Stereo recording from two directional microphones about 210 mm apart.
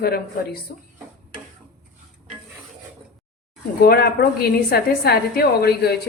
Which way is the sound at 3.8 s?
45° left (ahead or behind).